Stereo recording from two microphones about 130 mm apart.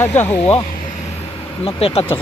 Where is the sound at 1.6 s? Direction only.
45° left (ahead or behind).